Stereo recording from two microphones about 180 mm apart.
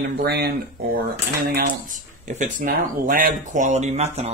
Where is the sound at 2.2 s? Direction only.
50° right (ahead or behind).